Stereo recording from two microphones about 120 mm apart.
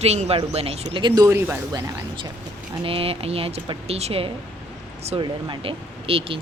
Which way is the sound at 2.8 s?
55° right (ahead or behind).